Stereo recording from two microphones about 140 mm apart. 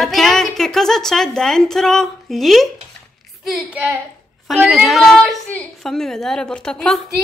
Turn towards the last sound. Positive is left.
turn(degrees=5)  # may be behind; listen again after turning